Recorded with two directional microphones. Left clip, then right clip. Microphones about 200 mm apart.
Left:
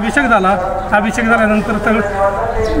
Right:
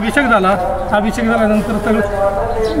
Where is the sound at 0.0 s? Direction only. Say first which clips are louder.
Left 1 dB; centre (ahead or behind).